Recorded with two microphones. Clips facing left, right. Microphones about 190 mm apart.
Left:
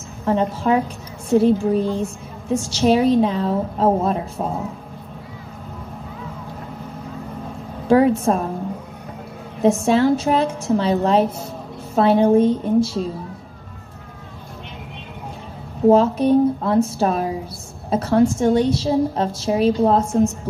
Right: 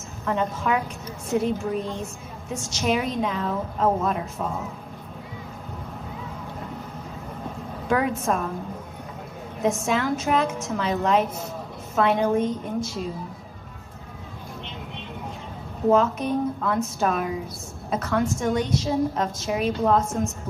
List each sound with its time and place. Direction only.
0.2 s a woman's voice: 30° left (ahead or behind)
7.9 s a woman's voice: 30° left (ahead or behind)
9.6 s a woman's voice: 30° left (ahead or behind)
15.9 s a woman's voice: 30° left (ahead or behind)